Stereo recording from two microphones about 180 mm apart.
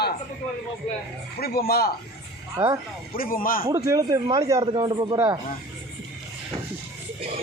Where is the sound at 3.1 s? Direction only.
50° left (ahead or behind).